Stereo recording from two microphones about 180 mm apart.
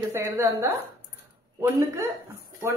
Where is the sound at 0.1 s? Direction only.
15° right (ahead or behind).